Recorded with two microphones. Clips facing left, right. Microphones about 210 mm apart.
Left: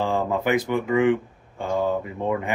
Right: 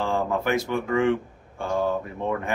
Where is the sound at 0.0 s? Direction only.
15° left (ahead or behind).